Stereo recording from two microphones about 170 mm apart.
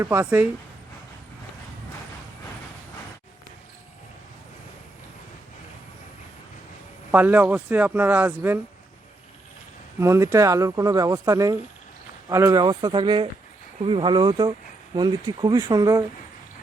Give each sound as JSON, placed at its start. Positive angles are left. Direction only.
{"t": 0.0, "sound": "speech", "side_deg": -15}
{"t": 7.1, "sound": "speech", "side_deg": -10}
{"t": 10.0, "sound": "speech", "side_deg": -15}